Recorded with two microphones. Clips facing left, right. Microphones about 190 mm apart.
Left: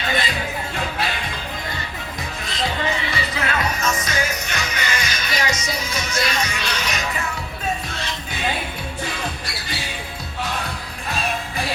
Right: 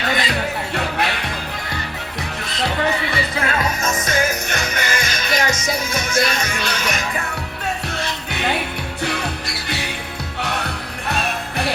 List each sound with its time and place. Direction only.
0.7 s music: 70° right (ahead or behind)
2.6 s music: 60° right (ahead or behind)
8.3 s music: 70° right (ahead or behind)
10.4 s music: 70° right (ahead or behind)